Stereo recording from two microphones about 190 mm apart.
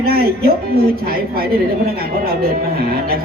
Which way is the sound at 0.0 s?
50° right (ahead or behind).